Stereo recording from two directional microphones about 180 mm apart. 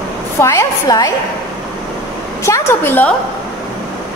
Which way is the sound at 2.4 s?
15° left (ahead or behind).